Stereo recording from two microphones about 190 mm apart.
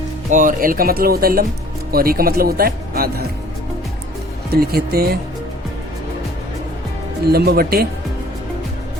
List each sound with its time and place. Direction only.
0.3 s speech: 45° right (ahead or behind)
4.5 s speech: 55° right (ahead or behind)
7.3 s speech: 55° right (ahead or behind)